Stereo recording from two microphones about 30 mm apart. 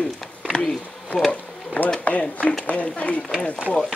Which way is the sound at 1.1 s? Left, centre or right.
Left.